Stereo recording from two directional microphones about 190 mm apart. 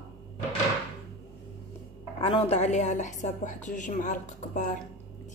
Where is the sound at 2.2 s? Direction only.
30° left (ahead or behind).